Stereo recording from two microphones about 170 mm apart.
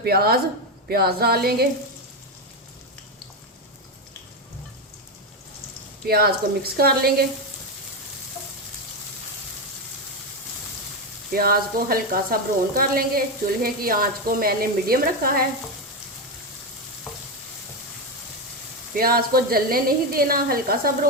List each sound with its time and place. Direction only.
0.0 s speech: 65° right (ahead or behind)
6.1 s speech: 65° right (ahead or behind)
11.3 s speech: 60° right (ahead or behind)
18.9 s speech: 60° right (ahead or behind)